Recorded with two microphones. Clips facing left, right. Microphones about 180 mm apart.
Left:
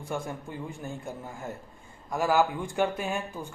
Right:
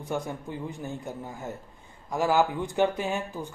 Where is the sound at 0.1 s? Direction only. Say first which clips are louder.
Right 2 dB; 20° right (ahead or behind).